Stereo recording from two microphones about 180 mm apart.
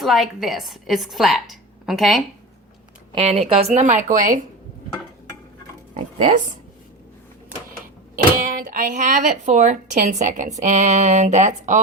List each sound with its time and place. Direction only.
0.0 s a woman's voice: centre (ahead or behind)
3.2 s a woman's voice: 35° right (ahead or behind)
8.1 s speech: 50° right (ahead or behind)